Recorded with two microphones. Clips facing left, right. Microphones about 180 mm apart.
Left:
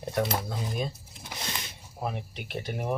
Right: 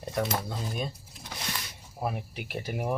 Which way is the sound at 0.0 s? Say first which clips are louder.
Left 2 dB; centre (ahead or behind).